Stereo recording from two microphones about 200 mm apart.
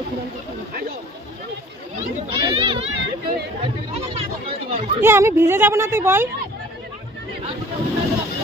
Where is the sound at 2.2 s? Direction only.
25° right (ahead or behind).